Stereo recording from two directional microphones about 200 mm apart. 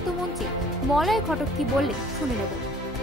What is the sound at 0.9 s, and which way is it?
Speech, centre (ahead or behind).